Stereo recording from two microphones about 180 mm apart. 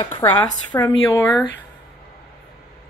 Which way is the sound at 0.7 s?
20° left (ahead or behind).